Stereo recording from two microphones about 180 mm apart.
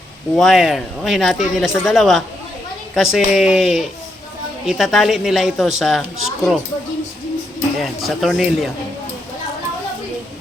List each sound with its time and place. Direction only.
0.3 s a woman's voice: centre (ahead or behind)
7.8 s a woman's voice: centre (ahead or behind)